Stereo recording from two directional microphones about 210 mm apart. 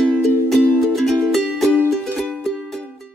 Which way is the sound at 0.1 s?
5° right (ahead or behind).